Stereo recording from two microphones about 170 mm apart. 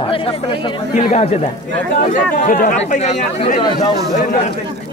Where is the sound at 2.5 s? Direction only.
50° left (ahead or behind).